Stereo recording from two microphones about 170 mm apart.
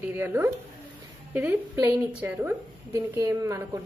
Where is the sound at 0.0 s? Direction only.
10° right (ahead or behind).